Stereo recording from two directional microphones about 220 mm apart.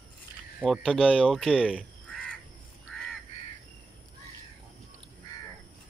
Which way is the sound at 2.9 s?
Centre (ahead or behind).